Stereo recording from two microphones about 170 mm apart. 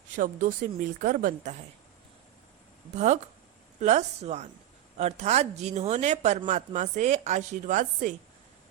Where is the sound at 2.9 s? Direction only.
45° right (ahead or behind).